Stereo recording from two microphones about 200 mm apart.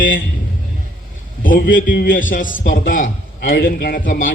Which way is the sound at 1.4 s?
45° left (ahead or behind).